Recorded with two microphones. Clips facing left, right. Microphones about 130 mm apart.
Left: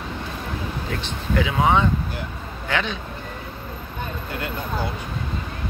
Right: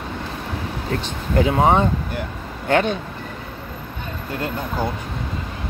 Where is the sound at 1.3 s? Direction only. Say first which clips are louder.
Right 3 dB; 45° right (ahead or behind).